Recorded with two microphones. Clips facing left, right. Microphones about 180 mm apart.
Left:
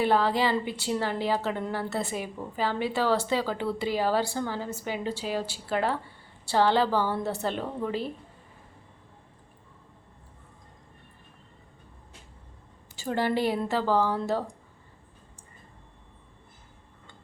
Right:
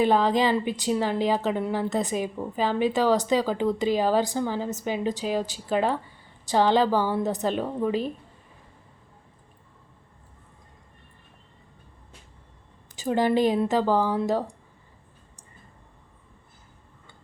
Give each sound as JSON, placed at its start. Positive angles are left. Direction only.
{"t": 0.0, "sound": "a woman's voice", "side_deg": -15}
{"t": 13.0, "sound": "a woman's voice", "side_deg": -15}